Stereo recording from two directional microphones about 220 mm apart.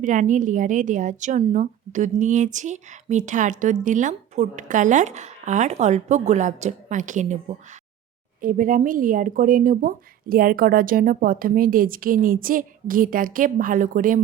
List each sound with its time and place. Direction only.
0.0 s a woman's voice: 35° right (ahead or behind)
8.4 s a woman's voice: 40° right (ahead or behind)